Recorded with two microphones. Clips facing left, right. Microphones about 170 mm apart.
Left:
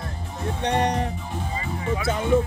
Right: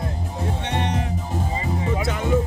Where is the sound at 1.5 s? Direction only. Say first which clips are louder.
Right 1 dB; 20° right (ahead or behind).